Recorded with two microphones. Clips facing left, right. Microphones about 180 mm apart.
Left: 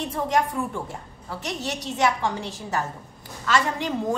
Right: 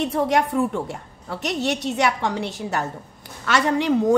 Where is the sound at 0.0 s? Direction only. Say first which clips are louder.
Right 4 dB; 70° right (ahead or behind).